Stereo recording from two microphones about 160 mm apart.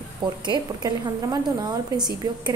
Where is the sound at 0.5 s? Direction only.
25° right (ahead or behind).